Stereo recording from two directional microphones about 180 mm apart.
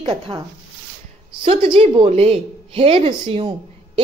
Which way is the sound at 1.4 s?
35° right (ahead or behind).